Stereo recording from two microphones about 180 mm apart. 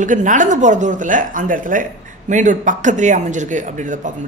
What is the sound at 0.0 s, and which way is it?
Speech, 45° right (ahead or behind).